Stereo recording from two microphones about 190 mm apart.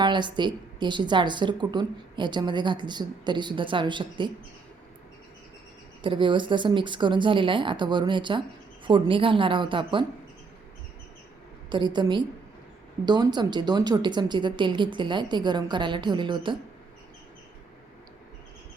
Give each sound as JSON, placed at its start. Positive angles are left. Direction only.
{"t": 0.0, "sound": "a woman's voice", "side_deg": -25}
{"t": 6.0, "sound": "a woman's voice", "side_deg": -25}
{"t": 11.7, "sound": "a woman's voice", "side_deg": -25}